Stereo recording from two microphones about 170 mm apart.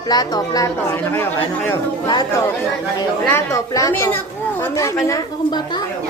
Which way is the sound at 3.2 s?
15° left (ahead or behind).